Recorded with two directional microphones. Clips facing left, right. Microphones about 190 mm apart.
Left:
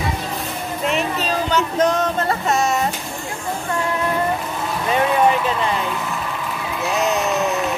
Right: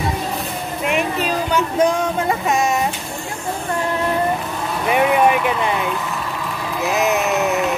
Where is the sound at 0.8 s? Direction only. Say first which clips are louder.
Right 1 dB; 10° right (ahead or behind).